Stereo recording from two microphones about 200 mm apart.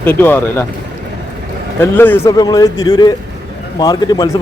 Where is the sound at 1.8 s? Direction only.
10° left (ahead or behind).